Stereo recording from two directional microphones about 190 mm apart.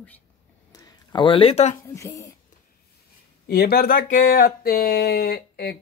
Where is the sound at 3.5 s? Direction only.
55° left (ahead or behind).